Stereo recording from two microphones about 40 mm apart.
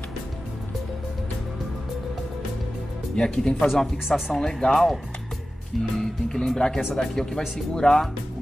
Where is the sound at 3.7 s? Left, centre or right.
Centre.